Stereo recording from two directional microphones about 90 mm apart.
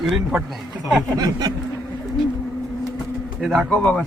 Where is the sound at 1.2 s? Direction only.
50° right (ahead or behind).